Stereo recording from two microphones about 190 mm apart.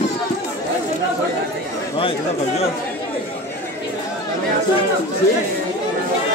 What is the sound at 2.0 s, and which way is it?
Speech, 30° left (ahead or behind).